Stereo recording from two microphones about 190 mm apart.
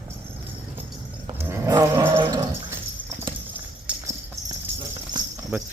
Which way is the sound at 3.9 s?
5° right (ahead or behind).